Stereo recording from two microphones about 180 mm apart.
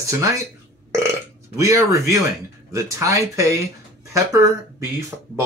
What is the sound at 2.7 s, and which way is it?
Speech, 15° right (ahead or behind).